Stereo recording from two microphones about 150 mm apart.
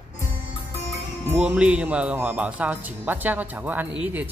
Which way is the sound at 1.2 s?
10° right (ahead or behind).